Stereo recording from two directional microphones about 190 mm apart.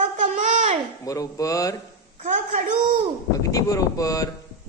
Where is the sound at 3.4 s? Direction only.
15° left (ahead or behind).